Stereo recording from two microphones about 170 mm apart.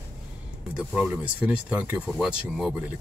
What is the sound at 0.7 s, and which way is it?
Speech, 5° right (ahead or behind).